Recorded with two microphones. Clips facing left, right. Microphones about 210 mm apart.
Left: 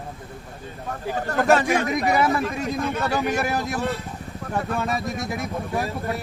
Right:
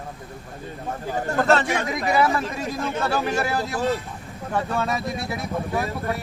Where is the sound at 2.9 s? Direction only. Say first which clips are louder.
Right 2 dB; 15° left (ahead or behind).